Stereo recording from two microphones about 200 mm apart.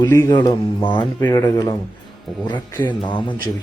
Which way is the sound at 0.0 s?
15° left (ahead or behind).